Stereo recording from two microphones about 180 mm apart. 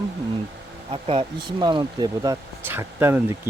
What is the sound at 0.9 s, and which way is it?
Speech, 30° right (ahead or behind).